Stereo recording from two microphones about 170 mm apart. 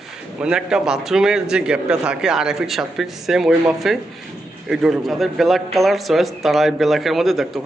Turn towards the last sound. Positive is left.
turn(degrees=0)  # may be behind; listen again after turning